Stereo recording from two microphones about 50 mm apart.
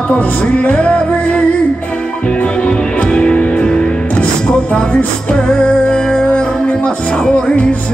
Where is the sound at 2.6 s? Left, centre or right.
Left.